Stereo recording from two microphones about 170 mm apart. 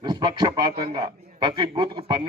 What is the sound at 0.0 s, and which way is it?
A man's voice, 25° right (ahead or behind).